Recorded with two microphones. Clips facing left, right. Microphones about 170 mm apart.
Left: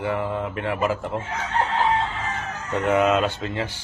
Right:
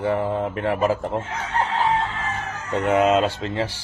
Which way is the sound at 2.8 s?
25° right (ahead or behind).